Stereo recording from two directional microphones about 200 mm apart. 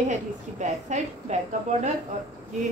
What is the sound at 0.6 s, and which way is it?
A woman's voice, 35° right (ahead or behind).